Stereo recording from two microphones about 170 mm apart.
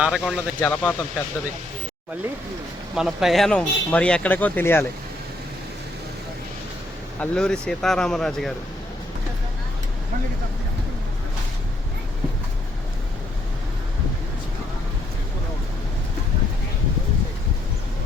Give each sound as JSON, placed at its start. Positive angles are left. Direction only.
{"t": 0.0, "sound": "speech", "side_deg": -5}
{"t": 0.6, "sound": "speech", "side_deg": 10}
{"t": 2.9, "sound": "speech", "side_deg": 0}
{"t": 7.2, "sound": "speech", "side_deg": 5}